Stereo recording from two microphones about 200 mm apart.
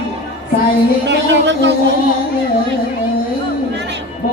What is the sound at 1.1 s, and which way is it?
Music, 60° right (ahead or behind).